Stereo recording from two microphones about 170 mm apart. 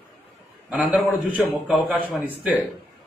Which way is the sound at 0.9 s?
10° right (ahead or behind).